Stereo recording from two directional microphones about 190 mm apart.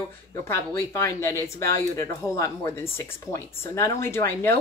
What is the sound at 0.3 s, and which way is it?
Speech, 15° left (ahead or behind).